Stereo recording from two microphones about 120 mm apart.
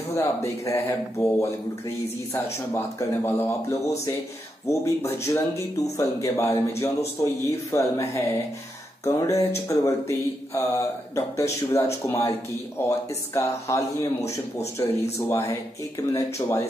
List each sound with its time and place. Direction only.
0.1 s speech: 20° left (ahead or behind)
2.7 s speech: 20° left (ahead or behind)
14.8 s speech: 30° left (ahead or behind)